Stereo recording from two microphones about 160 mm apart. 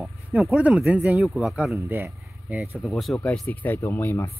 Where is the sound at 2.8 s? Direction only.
Centre (ahead or behind).